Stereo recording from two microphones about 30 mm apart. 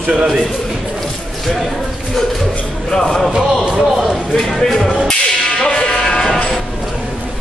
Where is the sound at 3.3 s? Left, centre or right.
Right.